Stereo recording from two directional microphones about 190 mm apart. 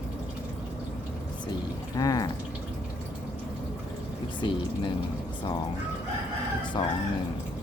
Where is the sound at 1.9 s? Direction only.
20° left (ahead or behind).